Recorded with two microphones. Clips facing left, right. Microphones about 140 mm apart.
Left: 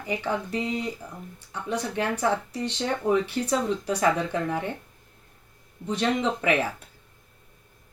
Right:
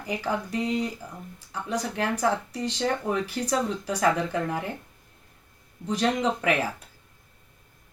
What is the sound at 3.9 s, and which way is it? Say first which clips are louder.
Speech: even; 5° left (ahead or behind).